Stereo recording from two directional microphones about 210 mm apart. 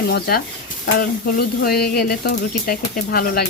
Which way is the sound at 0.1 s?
45° left (ahead or behind).